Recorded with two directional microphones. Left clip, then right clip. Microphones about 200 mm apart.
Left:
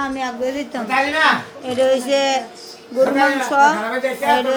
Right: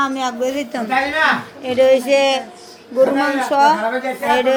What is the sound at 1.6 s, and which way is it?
Music, centre (ahead or behind).